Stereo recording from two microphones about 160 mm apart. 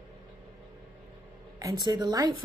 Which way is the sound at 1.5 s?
25° right (ahead or behind).